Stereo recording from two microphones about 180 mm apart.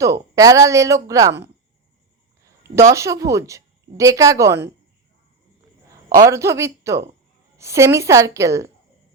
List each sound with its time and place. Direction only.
0.0 s a woman's voice: 20° right (ahead or behind)
2.4 s a woman's voice: 15° right (ahead or behind)
6.1 s a woman's voice: 15° right (ahead or behind)